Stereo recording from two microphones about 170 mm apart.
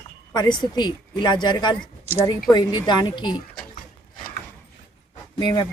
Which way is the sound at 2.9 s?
25° left (ahead or behind).